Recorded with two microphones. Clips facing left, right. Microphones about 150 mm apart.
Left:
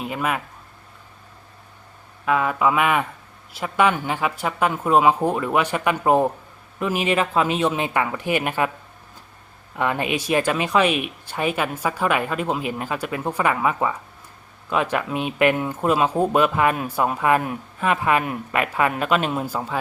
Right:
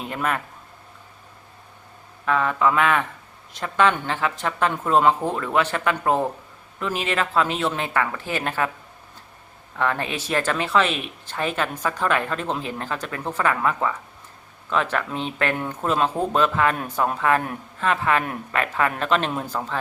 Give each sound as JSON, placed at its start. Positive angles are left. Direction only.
{"t": 0.0, "sound": "speech", "side_deg": 5}
{"t": 2.2, "sound": "speech", "side_deg": 10}
{"t": 9.7, "sound": "speech", "side_deg": 15}